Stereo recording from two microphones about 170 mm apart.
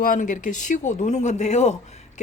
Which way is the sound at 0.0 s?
50° left (ahead or behind).